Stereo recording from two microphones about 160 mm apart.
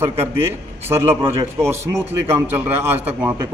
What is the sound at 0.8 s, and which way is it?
Speech, 15° right (ahead or behind).